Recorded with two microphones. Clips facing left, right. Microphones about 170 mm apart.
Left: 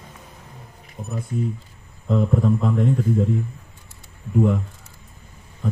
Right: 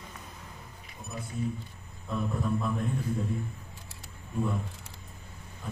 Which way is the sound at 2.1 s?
90° left.